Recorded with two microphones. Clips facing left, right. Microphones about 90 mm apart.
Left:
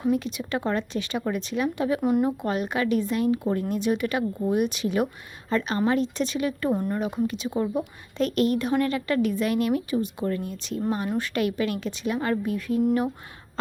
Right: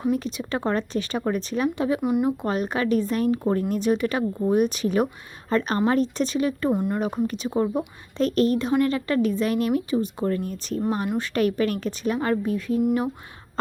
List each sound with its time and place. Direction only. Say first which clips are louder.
0.1 s a woman's voice: left 2 dB; 35° right (ahead or behind)
2.0 s speech: left 2 dB; 5° right (ahead or behind)
2.4 s a woman's voice: right 1 dB; 35° right (ahead or behind)
6.7 s speech: right 2 dB; 15° right (ahead or behind)
7.0 s a woman's voice: right 1 dB; 40° right (ahead or behind)
10.8 s speech: right 2 dB; 30° right (ahead or behind)
11.2 s a woman's voice: right 3 dB; 40° right (ahead or behind)